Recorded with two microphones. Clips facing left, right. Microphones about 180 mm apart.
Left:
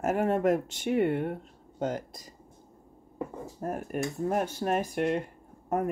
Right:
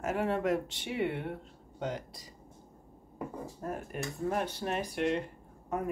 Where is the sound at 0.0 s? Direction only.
45° left (ahead or behind).